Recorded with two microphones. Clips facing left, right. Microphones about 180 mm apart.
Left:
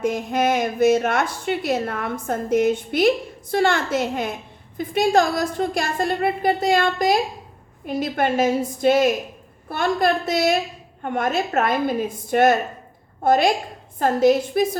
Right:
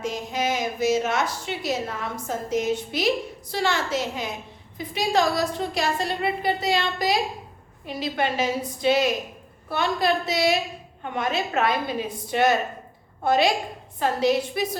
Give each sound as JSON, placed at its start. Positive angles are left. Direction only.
{"t": 0.0, "sound": "a woman's voice", "side_deg": 55}